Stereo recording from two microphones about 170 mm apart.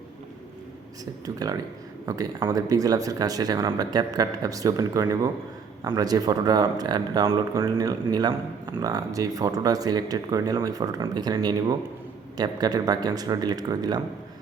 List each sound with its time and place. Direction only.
1.2 s speech: 20° right (ahead or behind)